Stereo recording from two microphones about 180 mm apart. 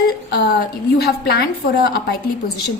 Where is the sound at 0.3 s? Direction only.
65° left (ahead or behind).